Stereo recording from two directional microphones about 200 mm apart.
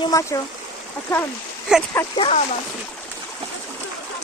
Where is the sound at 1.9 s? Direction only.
15° left (ahead or behind).